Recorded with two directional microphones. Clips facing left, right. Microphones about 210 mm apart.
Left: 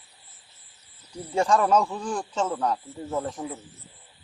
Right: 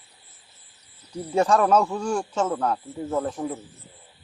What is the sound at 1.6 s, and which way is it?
Speech, 10° right (ahead or behind).